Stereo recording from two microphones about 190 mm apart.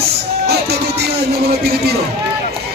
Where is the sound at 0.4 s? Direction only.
60° right (ahead or behind).